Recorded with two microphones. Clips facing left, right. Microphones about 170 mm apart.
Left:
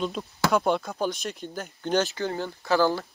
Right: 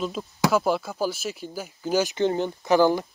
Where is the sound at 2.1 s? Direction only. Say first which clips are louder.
Right 6 dB; 20° right (ahead or behind).